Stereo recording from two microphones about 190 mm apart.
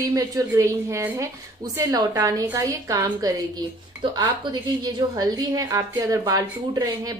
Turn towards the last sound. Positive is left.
turn(degrees=-20)  # may be behind; listen again after turning